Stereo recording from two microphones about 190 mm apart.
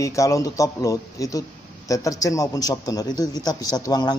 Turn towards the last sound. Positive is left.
turn(degrees=20)  # may be behind; listen again after turning